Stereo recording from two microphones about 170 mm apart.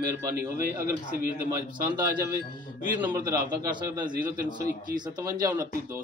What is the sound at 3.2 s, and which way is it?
A man's voice, 20° right (ahead or behind).